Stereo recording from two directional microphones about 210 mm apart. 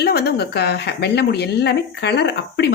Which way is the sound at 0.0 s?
50° left (ahead or behind).